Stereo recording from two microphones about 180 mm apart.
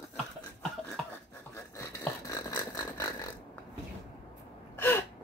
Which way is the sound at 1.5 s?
15° left (ahead or behind).